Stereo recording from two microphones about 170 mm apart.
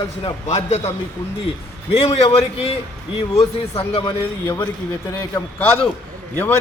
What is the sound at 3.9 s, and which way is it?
Speech, 35° left (ahead or behind).